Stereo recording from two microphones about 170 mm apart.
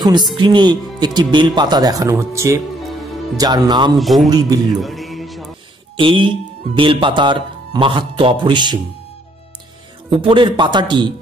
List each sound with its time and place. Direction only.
0.0 s speech: 25° right (ahead or behind)
4.0 s a man's voice: centre (ahead or behind)
4.3 s speech: 20° right (ahead or behind)
4.8 s music: centre (ahead or behind)
5.9 s speech: 30° right (ahead or behind)
10.2 s speech: 30° right (ahead or behind)